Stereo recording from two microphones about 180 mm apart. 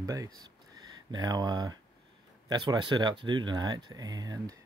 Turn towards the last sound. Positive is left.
turn(degrees=-20)  # may be behind; listen again after turning